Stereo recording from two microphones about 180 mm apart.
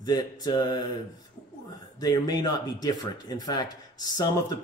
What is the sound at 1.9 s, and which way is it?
Speech, 20° left (ahead or behind).